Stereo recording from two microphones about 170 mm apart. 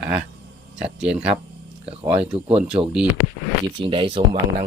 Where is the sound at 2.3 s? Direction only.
35° right (ahead or behind).